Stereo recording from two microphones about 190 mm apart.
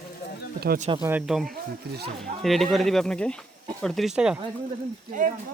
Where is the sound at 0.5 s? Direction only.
55° right (ahead or behind).